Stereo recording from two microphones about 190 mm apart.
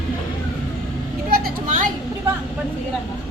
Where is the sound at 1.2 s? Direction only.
45° right (ahead or behind).